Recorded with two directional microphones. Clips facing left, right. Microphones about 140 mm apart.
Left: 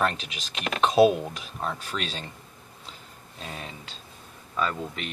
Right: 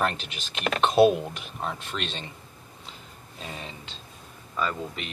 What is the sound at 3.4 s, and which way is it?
Speech, centre (ahead or behind).